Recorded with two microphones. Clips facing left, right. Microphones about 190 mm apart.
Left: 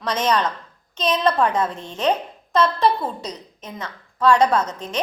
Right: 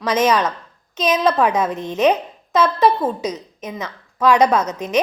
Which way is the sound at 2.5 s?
5° right (ahead or behind).